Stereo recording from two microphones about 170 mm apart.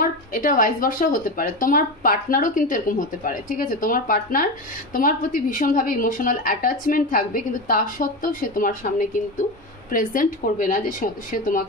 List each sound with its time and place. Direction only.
0.0 s speech: 55° left (ahead or behind)